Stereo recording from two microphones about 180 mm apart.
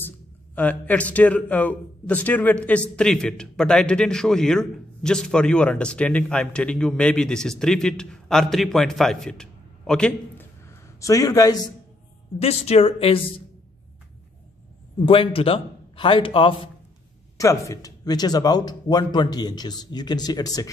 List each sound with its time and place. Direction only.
0.6 s a man's voice: 10° left (ahead or behind)
11.0 s speech: 20° left (ahead or behind)
12.4 s speech: 35° left (ahead or behind)
15.0 s speech: 30° left (ahead or behind)
17.4 s speech: 15° left (ahead or behind)